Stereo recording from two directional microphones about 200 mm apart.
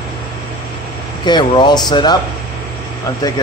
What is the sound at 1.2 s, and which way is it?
Speech, 25° left (ahead or behind).